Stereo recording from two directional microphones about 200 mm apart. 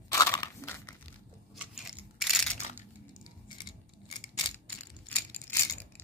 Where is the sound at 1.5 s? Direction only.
5° right (ahead or behind).